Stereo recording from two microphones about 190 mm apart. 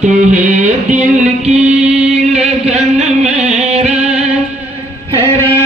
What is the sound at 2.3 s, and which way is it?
Music, 35° right (ahead or behind).